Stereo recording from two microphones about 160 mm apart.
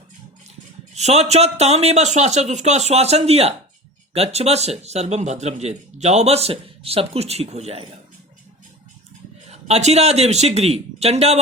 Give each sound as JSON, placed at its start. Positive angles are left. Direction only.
{"t": 0.9, "sound": "a man's voice", "side_deg": -45}
{"t": 9.5, "sound": "a man's voice", "side_deg": -40}